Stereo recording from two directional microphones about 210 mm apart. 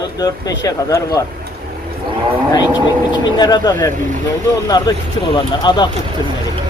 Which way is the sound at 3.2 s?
20° left (ahead or behind).